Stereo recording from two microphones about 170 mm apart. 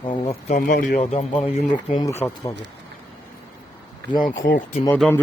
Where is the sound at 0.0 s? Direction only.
30° left (ahead or behind); by 1.0 s 50° left (ahead or behind).